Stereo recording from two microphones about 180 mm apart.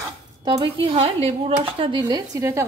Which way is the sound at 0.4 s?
25° right (ahead or behind).